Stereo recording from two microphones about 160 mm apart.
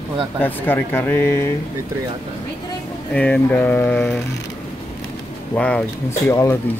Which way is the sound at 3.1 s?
10° left (ahead or behind).